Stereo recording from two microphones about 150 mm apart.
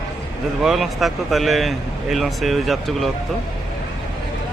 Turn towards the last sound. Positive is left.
turn(degrees=0)  # may be behind; listen again after turning